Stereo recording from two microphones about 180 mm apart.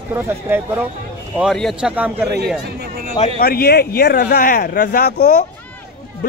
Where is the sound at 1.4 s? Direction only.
Centre (ahead or behind).